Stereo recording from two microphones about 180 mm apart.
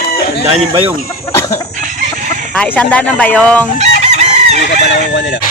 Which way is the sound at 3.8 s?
40° right (ahead or behind).